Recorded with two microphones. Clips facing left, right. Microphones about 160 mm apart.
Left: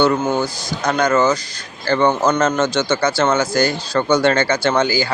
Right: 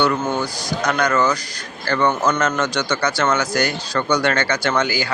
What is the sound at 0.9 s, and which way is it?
Speech, 25° left (ahead or behind).